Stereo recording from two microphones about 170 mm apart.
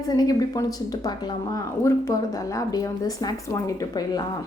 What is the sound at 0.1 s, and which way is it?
A woman's voice, 20° left (ahead or behind).